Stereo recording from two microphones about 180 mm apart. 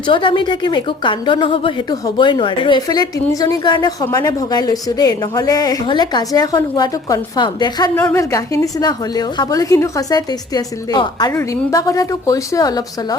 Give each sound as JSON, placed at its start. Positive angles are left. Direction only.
{"t": 0.1, "sound": "a woman's voice", "side_deg": 30}
{"t": 7.9, "sound": "a woman's voice", "side_deg": 10}